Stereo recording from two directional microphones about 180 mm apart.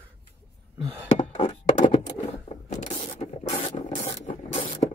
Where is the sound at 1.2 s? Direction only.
25° left (ahead or behind).